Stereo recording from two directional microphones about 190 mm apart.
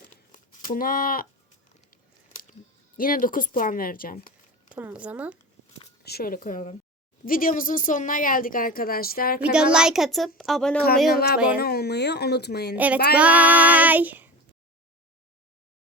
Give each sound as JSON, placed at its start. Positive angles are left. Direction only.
{"t": 0.3, "sound": "speech", "side_deg": 45}
{"t": 3.0, "sound": "speech", "side_deg": 45}
{"t": 4.7, "sound": "female singing", "side_deg": -10}
{"t": 6.0, "sound": "speech", "side_deg": 55}
{"t": 9.4, "sound": "a child's voice", "side_deg": -5}
{"t": 11.5, "sound": "speech", "side_deg": 55}
{"t": 12.7, "sound": "female singing", "side_deg": -10}